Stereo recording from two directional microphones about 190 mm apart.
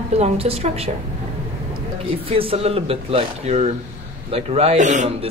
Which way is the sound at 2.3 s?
30° right (ahead or behind).